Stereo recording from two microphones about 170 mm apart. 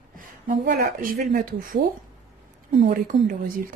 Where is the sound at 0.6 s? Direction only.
65° right (ahead or behind).